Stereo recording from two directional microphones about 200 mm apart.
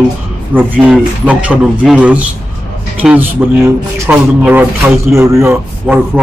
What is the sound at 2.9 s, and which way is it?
A man's voice, 10° right (ahead or behind).